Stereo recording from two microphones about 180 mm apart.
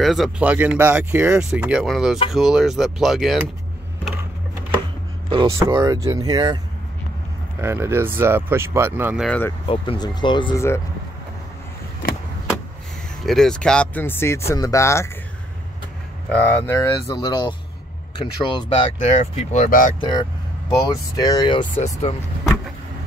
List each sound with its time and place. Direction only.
0.0 s speech: centre (ahead or behind)
5.3 s speech: 20° right (ahead or behind)
7.6 s speech: 15° right (ahead or behind)
9.2 s speech: 5° left (ahead or behind)
9.7 s speech: 25° left (ahead or behind)
13.2 s speech: centre (ahead or behind)
16.3 s speech: 10° left (ahead or behind); by 18.9 s 30° left (ahead or behind)
18.9 s speech: 40° left (ahead or behind)
20.0 s speech: 25° left (ahead or behind)